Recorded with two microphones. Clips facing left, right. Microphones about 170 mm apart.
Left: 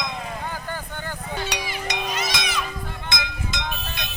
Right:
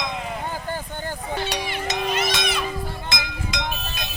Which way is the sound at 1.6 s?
60° right (ahead or behind).